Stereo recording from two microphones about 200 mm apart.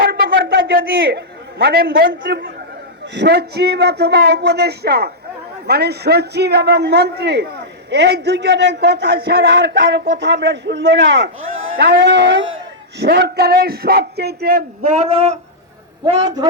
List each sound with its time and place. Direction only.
0.0 s a sound: 50° right (ahead or behind)
2.2 s a man's voice: 55° right (ahead or behind)
13.0 s a man's voice: 55° right (ahead or behind)
14.8 s speech: 35° right (ahead or behind)